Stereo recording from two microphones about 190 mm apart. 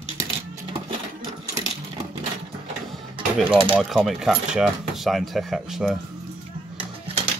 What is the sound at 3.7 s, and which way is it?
Speech, centre (ahead or behind).